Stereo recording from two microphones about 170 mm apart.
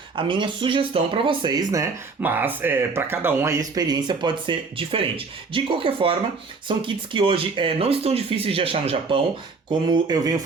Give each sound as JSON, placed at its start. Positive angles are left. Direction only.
{"t": 0.2, "sound": "speech", "side_deg": -30}